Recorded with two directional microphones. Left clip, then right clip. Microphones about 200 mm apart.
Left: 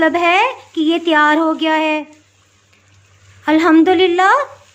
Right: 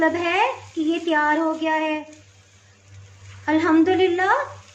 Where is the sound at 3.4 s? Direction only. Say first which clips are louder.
Left 7 dB; 40° left (ahead or behind).